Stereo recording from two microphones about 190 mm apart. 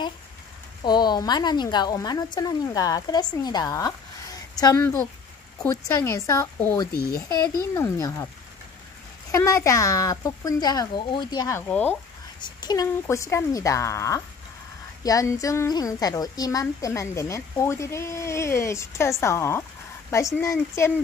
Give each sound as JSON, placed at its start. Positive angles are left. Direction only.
{"t": 0.8, "sound": "a woman's voice", "side_deg": 20}
{"t": 6.9, "sound": "speech", "side_deg": 55}
{"t": 7.2, "sound": "a woman's voice", "side_deg": 20}
{"t": 9.3, "sound": "a woman's voice", "side_deg": 15}
{"t": 12.4, "sound": "a woman's voice", "side_deg": 25}